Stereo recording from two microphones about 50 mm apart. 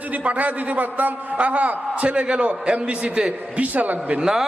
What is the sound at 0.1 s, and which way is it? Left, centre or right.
A man's voice, right.